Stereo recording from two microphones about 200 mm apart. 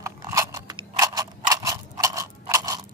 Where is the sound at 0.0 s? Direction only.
15° right (ahead or behind).